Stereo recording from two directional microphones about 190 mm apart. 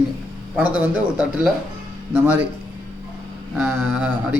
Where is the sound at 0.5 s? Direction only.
5° right (ahead or behind).